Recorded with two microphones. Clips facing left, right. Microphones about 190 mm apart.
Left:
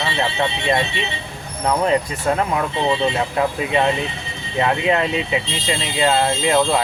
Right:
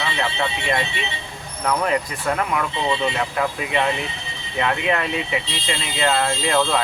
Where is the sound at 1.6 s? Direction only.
25° left (ahead or behind).